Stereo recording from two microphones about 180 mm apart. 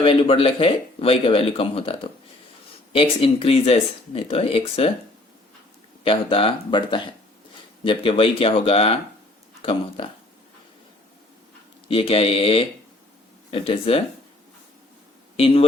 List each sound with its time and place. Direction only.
0.0 s speech: 30° left (ahead or behind)
6.1 s speech: 30° left (ahead or behind)
11.9 s speech: 30° left (ahead or behind)
15.4 s speech: 30° left (ahead or behind)